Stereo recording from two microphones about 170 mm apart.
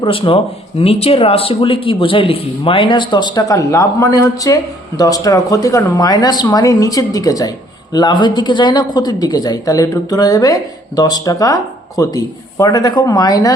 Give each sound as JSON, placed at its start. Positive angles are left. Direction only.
{"t": 0.0, "sound": "speech", "side_deg": 30}